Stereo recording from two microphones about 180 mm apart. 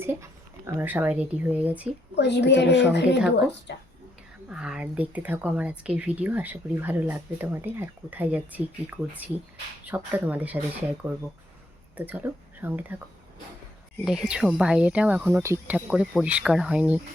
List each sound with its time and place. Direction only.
0.0 s a sound: 15° right (ahead or behind)
0.8 s speech: 10° right (ahead or behind)
2.1 s a woman's voice: 70° left (ahead or behind)
4.4 s speech: 5° right (ahead or behind)
11.9 s speech: 10° right (ahead or behind)
14.0 s speech: 5° right (ahead or behind)